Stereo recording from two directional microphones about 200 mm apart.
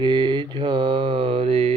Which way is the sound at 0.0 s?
25° right (ahead or behind).